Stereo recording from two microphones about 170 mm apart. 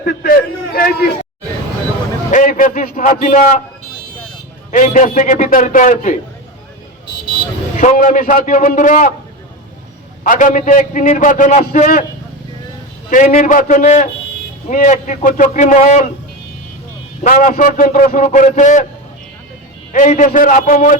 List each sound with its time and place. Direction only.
0.0 s a man's voice: 60° left (ahead or behind)
2.3 s a man's voice: 50° left (ahead or behind)
4.7 s a man's voice: 50° left (ahead or behind)
7.8 s a man's voice: 50° left (ahead or behind)
10.2 s a man's voice: 50° left (ahead or behind)
13.1 s a man's voice: 45° left (ahead or behind)
17.2 s a man's voice: 55° left (ahead or behind)
19.9 s a man's voice: 50° left (ahead or behind)